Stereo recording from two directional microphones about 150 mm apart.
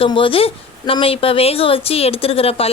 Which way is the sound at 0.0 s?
35° left (ahead or behind).